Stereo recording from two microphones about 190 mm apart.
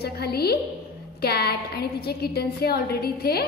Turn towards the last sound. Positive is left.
turn(degrees=55)  # may be behind; listen again after turning